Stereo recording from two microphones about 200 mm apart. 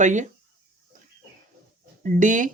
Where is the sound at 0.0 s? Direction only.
35° right (ahead or behind).